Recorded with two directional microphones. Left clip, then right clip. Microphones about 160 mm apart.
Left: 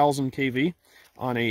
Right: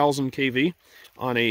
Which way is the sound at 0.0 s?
35° left (ahead or behind).